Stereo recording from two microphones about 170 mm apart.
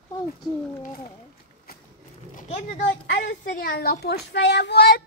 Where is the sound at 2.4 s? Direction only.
40° left (ahead or behind).